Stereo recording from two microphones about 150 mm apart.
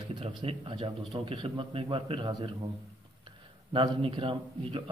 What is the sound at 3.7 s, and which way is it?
A man's voice, 35° right (ahead or behind).